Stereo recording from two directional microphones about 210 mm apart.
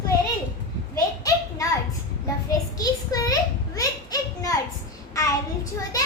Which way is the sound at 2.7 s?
15° left (ahead or behind).